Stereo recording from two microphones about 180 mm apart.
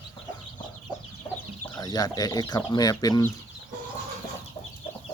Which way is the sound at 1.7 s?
20° left (ahead or behind).